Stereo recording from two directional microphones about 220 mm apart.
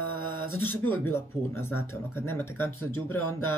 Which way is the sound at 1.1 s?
10° left (ahead or behind).